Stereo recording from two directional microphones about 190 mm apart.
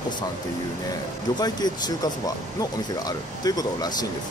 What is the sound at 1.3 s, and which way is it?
Speech, 20° left (ahead or behind).